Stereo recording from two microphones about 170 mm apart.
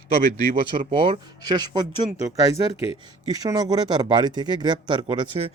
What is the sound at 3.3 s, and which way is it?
Speech, 20° right (ahead or behind).